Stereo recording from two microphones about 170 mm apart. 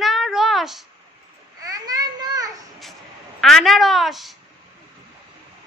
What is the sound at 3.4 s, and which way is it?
Speech, centre (ahead or behind).